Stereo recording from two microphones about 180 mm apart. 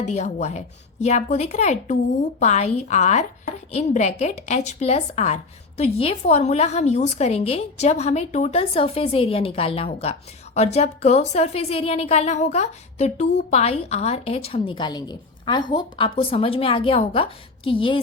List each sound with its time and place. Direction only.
0.0 s a woman's voice: 40° left (ahead or behind)